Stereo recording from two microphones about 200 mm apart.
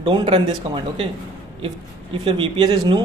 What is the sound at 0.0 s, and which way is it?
Speech, 25° right (ahead or behind).